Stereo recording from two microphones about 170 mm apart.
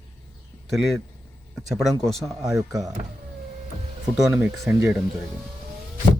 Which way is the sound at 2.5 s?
20° right (ahead or behind).